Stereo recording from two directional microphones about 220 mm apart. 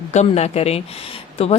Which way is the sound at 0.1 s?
30° left (ahead or behind).